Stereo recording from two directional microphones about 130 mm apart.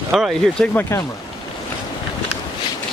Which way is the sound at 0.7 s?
20° left (ahead or behind).